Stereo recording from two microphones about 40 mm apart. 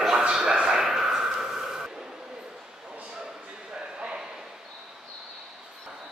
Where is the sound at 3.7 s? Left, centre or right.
Centre.